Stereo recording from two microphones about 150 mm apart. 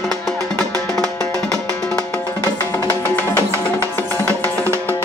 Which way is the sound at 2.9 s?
20° left (ahead or behind).